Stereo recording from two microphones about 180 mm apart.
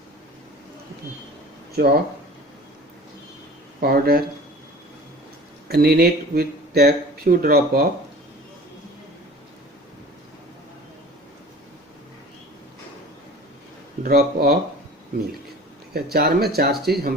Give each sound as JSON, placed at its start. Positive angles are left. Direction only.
{"t": 1.7, "sound": "speech", "side_deg": -60}
{"t": 3.8, "sound": "speech", "side_deg": -55}
{"t": 5.6, "sound": "speech", "side_deg": -60}
{"t": 14.0, "sound": "speech", "side_deg": -60}
{"t": 15.9, "sound": "speech", "side_deg": -60}